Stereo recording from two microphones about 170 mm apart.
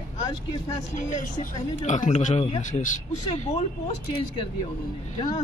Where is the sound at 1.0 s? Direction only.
45° left (ahead or behind).